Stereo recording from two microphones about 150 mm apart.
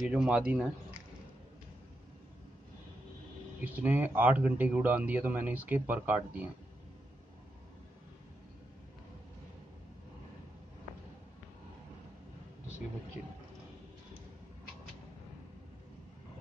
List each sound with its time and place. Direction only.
0.0 s speech: 5° right (ahead or behind)
3.6 s speech: 10° right (ahead or behind)